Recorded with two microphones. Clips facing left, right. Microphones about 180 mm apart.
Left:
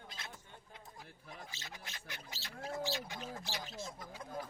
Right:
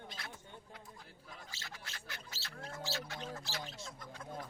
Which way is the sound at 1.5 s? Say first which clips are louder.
Even; 20° left (ahead or behind).